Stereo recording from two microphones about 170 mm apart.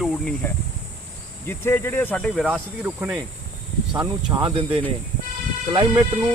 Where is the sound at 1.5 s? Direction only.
15° left (ahead or behind).